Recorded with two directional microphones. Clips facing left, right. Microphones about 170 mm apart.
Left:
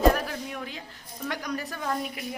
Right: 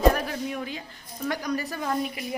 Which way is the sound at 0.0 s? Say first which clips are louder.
Right 1 dB; centre (ahead or behind).